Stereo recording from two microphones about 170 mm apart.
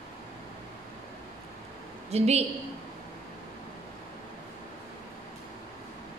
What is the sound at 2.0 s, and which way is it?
Speech, 40° right (ahead or behind).